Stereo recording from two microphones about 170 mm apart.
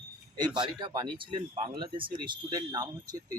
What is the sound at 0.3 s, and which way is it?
Speech, 25° right (ahead or behind).